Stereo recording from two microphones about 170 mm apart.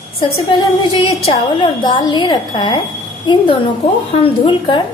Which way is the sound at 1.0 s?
35° left (ahead or behind).